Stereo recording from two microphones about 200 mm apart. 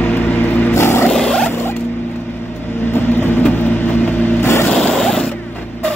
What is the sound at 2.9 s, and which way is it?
Vehicle, 10° left (ahead or behind).